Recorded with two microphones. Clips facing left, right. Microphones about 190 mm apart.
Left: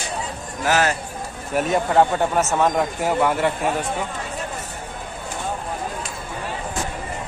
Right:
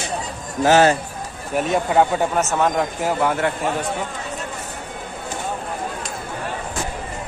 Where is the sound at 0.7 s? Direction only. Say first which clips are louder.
Right 6 dB; 30° right (ahead or behind).